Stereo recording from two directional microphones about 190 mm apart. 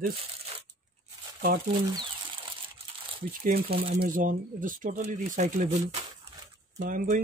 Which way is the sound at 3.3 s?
50° right (ahead or behind).